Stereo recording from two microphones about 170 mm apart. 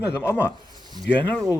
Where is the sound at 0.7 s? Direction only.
25° right (ahead or behind).